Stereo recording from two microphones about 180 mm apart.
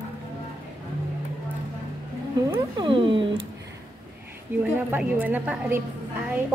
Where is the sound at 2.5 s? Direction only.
25° right (ahead or behind).